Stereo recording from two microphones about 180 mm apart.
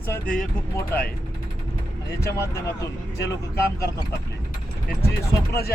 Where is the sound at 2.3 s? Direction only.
15° left (ahead or behind).